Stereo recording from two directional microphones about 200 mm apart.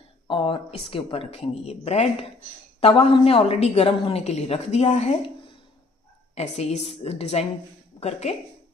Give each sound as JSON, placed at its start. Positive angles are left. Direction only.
{"t": 0.3, "sound": "a woman's voice", "side_deg": 25}